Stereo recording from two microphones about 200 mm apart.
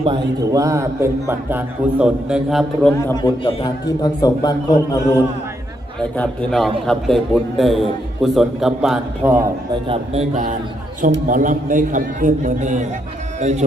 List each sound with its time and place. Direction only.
0.0 s a man's voice: 20° right (ahead or behind); by 2.9 s centre (ahead or behind)
3.1 s a man's voice: 20° left (ahead or behind)
6.0 s a man's voice: 5° left (ahead or behind)
9.8 s a man's voice: 30° right (ahead or behind)